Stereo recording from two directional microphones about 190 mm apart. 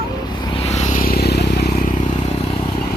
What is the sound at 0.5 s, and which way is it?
Vehicle, 35° left (ahead or behind).